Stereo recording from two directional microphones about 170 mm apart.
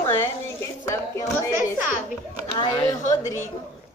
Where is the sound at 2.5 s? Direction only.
25° left (ahead or behind).